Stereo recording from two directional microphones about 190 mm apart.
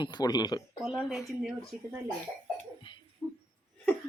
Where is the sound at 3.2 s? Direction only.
5° left (ahead or behind).